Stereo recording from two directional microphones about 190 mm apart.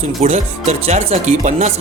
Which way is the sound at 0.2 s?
35° right (ahead or behind).